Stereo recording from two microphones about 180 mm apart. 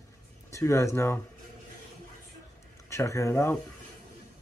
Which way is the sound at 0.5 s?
15° left (ahead or behind).